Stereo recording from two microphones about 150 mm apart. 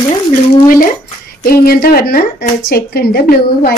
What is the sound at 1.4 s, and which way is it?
A woman's voice, 85° left.